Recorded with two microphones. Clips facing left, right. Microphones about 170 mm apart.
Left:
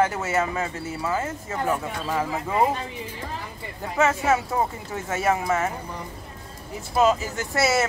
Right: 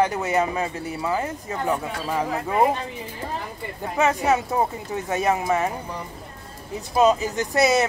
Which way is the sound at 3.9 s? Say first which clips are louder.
Right 1 dB; 15° right (ahead or behind).